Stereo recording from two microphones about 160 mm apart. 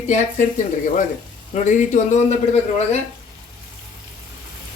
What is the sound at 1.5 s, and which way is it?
Speech, 50° left (ahead or behind).